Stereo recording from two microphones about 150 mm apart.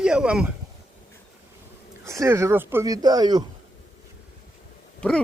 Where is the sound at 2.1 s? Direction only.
20° right (ahead or behind).